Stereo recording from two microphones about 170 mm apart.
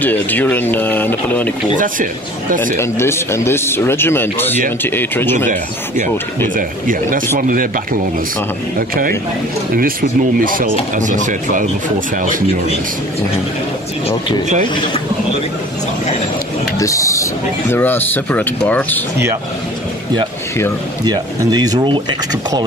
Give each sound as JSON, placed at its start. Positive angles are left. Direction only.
{"t": 0.0, "sound": "speech", "side_deg": 10}
{"t": 2.8, "sound": "speech", "side_deg": 15}
{"t": 5.5, "sound": "speech", "side_deg": -50}
{"t": 8.7, "sound": "speech", "side_deg": -60}
{"t": 10.4, "sound": "speech", "side_deg": -55}
{"t": 16.7, "sound": "speech", "side_deg": 20}
{"t": 21.0, "sound": "speech", "side_deg": -25}